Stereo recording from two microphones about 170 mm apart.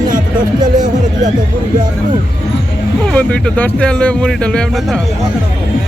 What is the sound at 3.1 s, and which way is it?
Speech, 10° left (ahead or behind).